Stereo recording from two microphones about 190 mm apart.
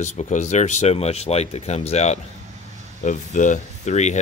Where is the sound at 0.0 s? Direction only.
40° left (ahead or behind).